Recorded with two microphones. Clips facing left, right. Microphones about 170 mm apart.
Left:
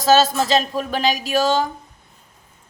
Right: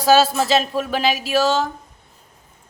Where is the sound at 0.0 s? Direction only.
10° right (ahead or behind).